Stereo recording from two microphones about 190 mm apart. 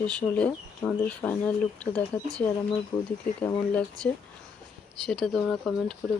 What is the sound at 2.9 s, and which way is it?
Speech, 25° left (ahead or behind).